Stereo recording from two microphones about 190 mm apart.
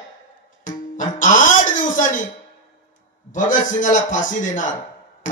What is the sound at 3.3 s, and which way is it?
A man's voice, 45° left (ahead or behind).